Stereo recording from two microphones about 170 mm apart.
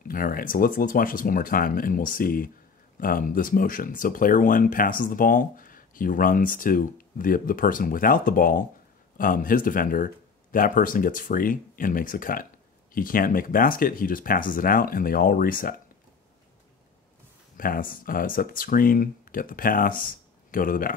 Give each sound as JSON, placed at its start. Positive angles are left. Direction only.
{"t": 0.1, "sound": "speech", "side_deg": 55}
{"t": 17.6, "sound": "speech", "side_deg": 55}